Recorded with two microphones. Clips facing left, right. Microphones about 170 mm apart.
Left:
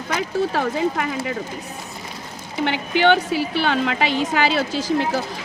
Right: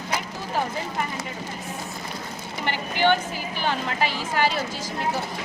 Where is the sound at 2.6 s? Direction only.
85° left.